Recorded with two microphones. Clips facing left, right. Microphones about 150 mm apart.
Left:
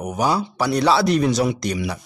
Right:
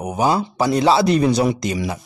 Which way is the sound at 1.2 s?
35° right (ahead or behind).